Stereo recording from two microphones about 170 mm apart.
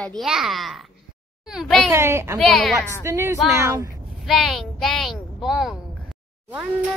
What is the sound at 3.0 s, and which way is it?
Speech, 15° right (ahead or behind).